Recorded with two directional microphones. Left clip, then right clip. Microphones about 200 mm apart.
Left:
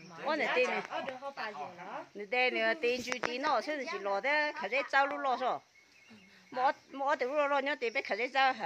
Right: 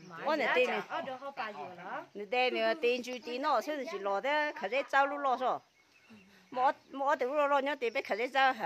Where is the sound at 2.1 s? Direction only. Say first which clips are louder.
Even; 15° right (ahead or behind).